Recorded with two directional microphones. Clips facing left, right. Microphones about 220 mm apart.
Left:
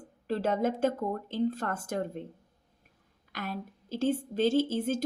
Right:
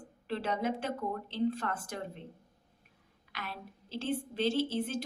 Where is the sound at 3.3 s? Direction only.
45° left (ahead or behind).